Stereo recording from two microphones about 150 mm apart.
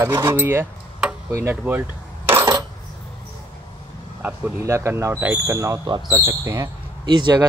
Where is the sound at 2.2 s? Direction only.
20° right (ahead or behind).